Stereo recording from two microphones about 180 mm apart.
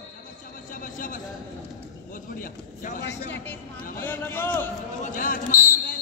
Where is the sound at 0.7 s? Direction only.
50° left (ahead or behind).